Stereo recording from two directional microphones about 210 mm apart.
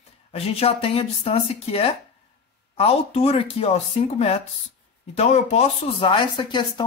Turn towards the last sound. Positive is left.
turn(degrees=20)  # may be behind; listen again after turning